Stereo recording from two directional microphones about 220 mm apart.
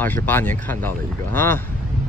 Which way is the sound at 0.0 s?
10° left (ahead or behind).